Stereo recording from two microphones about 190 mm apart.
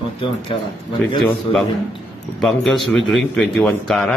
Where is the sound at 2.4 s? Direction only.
Centre (ahead or behind).